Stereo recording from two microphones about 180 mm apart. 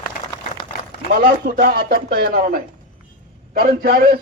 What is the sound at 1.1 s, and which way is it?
A man's voice, 50° right (ahead or behind).